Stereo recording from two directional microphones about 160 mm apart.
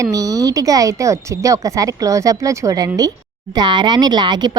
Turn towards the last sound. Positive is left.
turn(degrees=-25)  # may be behind; listen again after turning